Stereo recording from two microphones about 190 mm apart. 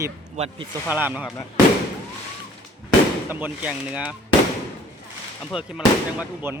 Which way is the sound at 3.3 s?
10° right (ahead or behind).